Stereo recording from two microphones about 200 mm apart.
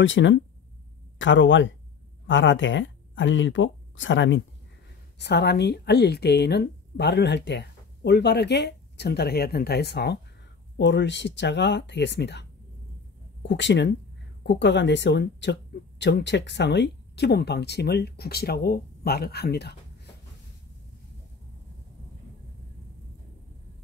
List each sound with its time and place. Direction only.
0.0 s speech: 70° left (ahead or behind)
5.2 s a woman's voice: 55° left (ahead or behind)